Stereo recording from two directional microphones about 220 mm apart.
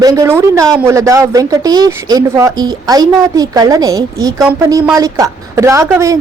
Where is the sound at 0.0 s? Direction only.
15° right (ahead or behind).